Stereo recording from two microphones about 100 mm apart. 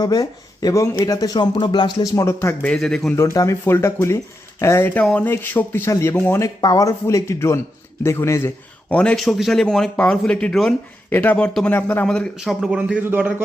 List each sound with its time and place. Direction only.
0.0 s speech: 40° left (ahead or behind)
1.5 s speech: 50° left (ahead or behind)
2.1 s speech: 30° left (ahead or behind)
2.6 s speech: 5° left (ahead or behind)
3.2 s speech: 30° left (ahead or behind)
6.6 s speech: 40° left (ahead or behind)
8.9 s speech: 10° left (ahead or behind)
9.2 s speech: centre (ahead or behind)
11.1 s speech: 15° left (ahead or behind)
12.0 s speech: 10° left (ahead or behind)
12.4 s speech: centre (ahead or behind)
13.0 s a man's voice: 15° right (ahead or behind)